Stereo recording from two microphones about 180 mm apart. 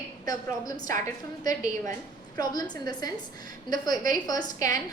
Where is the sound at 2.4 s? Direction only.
20° left (ahead or behind).